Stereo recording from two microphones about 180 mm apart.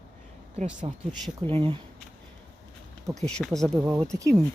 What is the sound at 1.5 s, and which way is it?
Speech, 30° right (ahead or behind).